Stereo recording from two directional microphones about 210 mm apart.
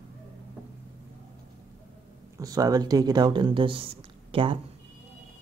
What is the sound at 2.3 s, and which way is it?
Speech, 15° right (ahead or behind).